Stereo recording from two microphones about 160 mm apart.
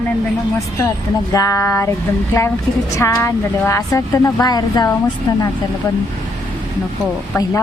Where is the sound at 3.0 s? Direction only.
15° left (ahead or behind).